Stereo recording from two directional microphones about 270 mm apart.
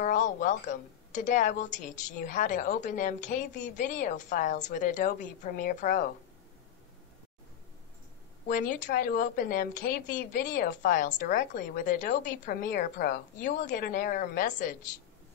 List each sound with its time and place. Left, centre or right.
0.0 s a woman's voice: left
8.5 s a woman's voice: left